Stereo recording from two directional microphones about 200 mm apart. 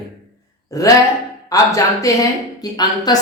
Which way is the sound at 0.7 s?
15° left (ahead or behind).